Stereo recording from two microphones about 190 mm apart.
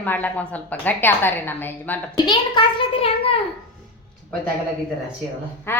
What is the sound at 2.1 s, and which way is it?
A child's voice, 25° left (ahead or behind).